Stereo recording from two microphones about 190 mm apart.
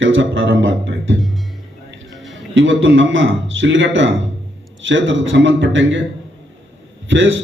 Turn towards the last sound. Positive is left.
turn(degrees=-90)